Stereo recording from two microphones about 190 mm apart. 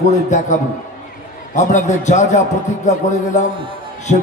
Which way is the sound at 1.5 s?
40° left (ahead or behind).